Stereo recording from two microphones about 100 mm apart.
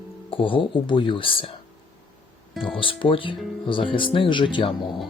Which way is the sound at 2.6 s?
60° left (ahead or behind).